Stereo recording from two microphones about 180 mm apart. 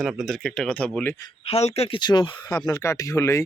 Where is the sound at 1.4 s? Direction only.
35° left (ahead or behind); by 3.4 s 15° left (ahead or behind).